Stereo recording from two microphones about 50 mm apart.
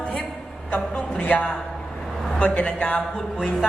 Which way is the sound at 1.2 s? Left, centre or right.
Left.